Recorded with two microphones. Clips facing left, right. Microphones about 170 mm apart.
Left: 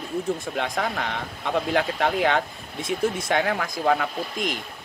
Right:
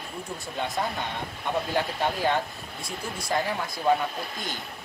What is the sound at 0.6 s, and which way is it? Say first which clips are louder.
Speech: left 3 dB; 90° left.